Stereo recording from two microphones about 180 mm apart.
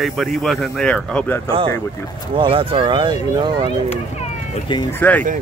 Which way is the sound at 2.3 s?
30° right (ahead or behind).